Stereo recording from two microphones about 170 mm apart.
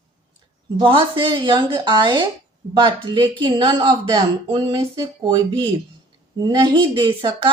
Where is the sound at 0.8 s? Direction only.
30° right (ahead or behind).